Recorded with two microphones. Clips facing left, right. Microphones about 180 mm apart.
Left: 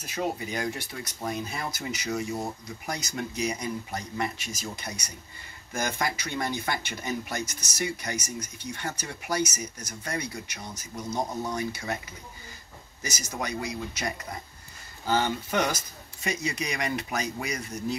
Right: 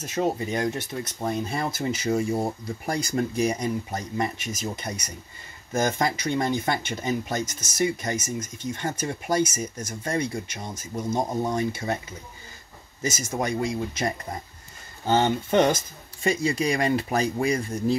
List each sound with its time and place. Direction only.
0.0 s speech: 25° right (ahead or behind)
13.0 s speech: 25° right (ahead or behind)